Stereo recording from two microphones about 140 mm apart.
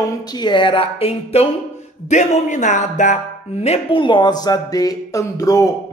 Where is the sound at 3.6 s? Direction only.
50° left (ahead or behind).